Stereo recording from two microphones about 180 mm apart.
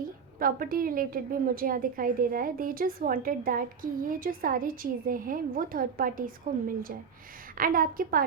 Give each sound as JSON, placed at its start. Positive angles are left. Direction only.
{"t": 0.3, "sound": "a woman's voice", "side_deg": -50}